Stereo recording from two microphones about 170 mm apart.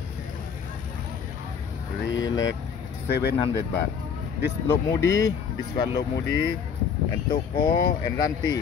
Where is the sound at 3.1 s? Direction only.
75° left (ahead or behind).